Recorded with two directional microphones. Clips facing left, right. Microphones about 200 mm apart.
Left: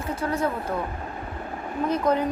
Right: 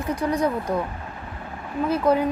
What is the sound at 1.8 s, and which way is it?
Speech, 10° right (ahead or behind).